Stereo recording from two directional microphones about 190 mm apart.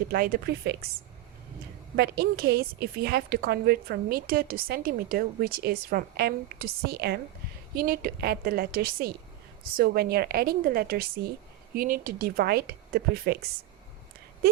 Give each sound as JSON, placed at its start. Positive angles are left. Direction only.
{"t": 0.1, "sound": "speech", "side_deg": -50}
{"t": 2.0, "sound": "a woman's voice", "side_deg": -55}